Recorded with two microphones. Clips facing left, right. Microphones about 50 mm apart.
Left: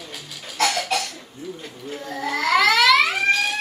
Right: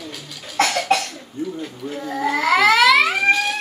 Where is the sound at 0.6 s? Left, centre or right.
Right.